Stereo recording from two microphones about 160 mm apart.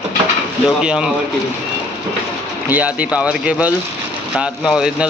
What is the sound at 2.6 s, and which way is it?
Speech, 10° right (ahead or behind).